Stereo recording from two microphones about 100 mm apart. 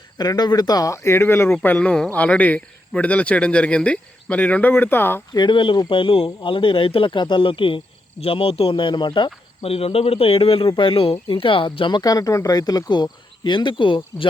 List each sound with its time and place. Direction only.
0.2 s speech: 45° left (ahead or behind); by 1.5 s 25° left (ahead or behind)
1.6 s a man's voice: 15° left (ahead or behind)
5.3 s speech: 50° left (ahead or behind)
8.2 s speech: 70° left (ahead or behind); by 9.6 s 50° left (ahead or behind)
9.6 s a man's voice: 75° left (ahead or behind)
10.7 s speech: 55° left (ahead or behind)